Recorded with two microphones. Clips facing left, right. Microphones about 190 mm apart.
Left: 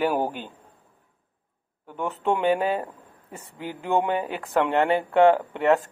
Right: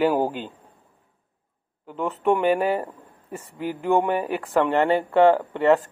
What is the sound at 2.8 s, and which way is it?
Speech, 15° left (ahead or behind).